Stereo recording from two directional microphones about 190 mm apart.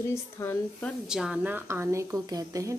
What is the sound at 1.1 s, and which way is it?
A woman's voice, 5° right (ahead or behind).